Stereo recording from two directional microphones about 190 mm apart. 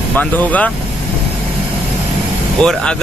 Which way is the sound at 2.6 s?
5° left (ahead or behind).